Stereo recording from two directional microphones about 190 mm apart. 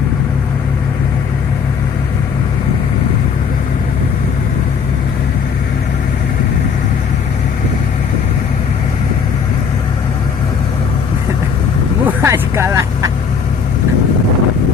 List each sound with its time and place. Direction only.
12.0 s vehicle: 15° right (ahead or behind)